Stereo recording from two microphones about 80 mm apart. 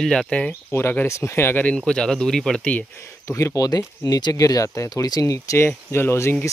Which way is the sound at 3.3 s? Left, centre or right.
Left.